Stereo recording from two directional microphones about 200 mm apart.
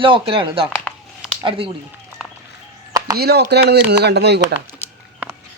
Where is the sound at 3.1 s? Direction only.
55° right (ahead or behind).